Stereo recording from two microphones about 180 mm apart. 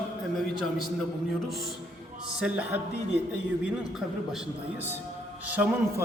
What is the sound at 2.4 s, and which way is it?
Speech, 10° right (ahead or behind).